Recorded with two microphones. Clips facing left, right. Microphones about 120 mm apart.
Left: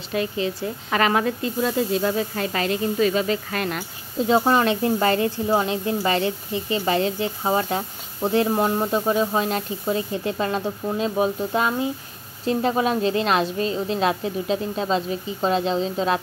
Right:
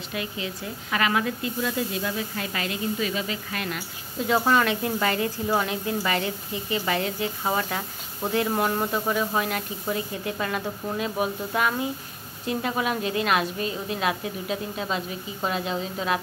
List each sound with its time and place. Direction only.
0.1 s speech: 35° left (ahead or behind)
4.3 s a woman's voice: 30° left (ahead or behind)